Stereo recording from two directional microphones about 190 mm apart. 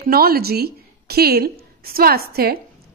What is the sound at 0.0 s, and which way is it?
Speech, 55° right (ahead or behind).